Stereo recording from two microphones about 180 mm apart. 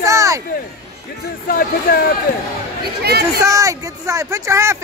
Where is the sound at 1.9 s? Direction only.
55° left (ahead or behind).